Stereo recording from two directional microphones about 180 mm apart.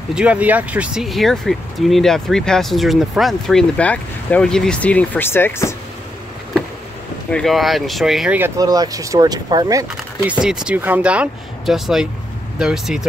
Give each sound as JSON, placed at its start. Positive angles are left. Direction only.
{"t": 0.1, "sound": "speech", "side_deg": -5}
{"t": 7.2, "sound": "speech", "side_deg": 5}
{"t": 8.5, "sound": "speech", "side_deg": -20}
{"t": 10.4, "sound": "speech", "side_deg": -5}